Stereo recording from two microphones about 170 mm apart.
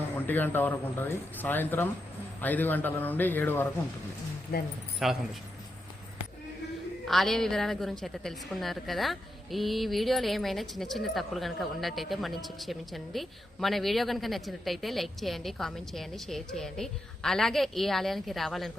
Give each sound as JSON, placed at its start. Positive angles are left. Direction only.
{"t": 0.3, "sound": "a man's voice", "side_deg": 10}
{"t": 4.5, "sound": "speech", "side_deg": 65}
{"t": 5.0, "sound": "a woman's voice", "side_deg": 0}
{"t": 7.1, "sound": "a woman's voice", "side_deg": 0}